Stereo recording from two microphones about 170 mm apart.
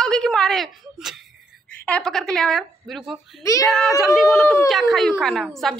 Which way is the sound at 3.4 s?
20° left (ahead or behind).